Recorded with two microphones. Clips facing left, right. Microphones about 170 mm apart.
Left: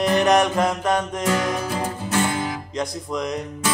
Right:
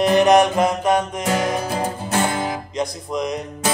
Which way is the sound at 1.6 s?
40° right (ahead or behind).